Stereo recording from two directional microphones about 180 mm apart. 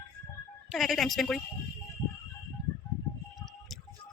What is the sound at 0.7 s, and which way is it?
Speech, centre (ahead or behind).